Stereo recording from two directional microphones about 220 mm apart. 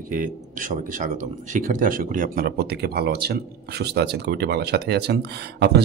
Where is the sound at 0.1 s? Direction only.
35° right (ahead or behind).